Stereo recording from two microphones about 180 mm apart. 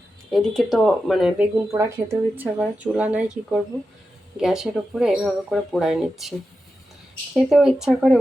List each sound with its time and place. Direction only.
0.3 s speech: centre (ahead or behind)
1.6 s speech: 15° right (ahead or behind)
7.3 s speech: centre (ahead or behind)